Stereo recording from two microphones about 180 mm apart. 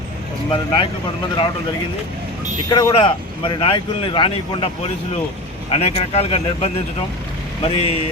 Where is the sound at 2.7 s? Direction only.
25° left (ahead or behind).